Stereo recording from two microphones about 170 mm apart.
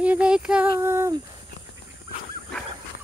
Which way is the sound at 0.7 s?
15° right (ahead or behind).